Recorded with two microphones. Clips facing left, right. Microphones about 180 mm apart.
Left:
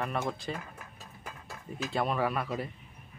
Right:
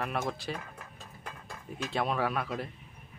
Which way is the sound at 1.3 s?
5° left (ahead or behind).